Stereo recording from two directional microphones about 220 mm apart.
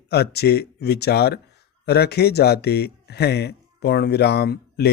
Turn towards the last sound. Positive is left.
turn(degrees=45)  # may be behind; listen again after turning